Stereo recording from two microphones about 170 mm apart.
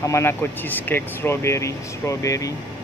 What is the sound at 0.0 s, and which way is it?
Speech, 15° left (ahead or behind).